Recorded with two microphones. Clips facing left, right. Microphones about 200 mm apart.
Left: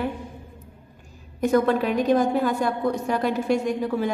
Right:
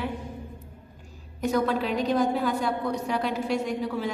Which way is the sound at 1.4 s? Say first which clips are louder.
Left 5 dB; 55° left (ahead or behind).